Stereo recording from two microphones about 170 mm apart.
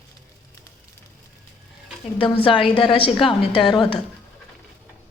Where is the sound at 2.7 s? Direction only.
30° left (ahead or behind).